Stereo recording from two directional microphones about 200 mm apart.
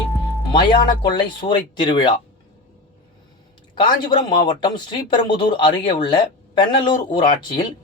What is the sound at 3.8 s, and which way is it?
Speech, 25° left (ahead or behind).